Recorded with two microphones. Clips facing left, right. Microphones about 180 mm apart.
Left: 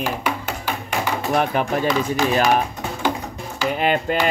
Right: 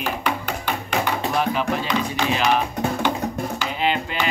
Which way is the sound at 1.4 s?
55° left (ahead or behind).